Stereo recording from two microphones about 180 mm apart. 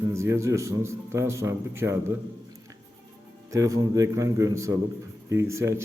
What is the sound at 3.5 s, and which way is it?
A man's voice, 15° right (ahead or behind).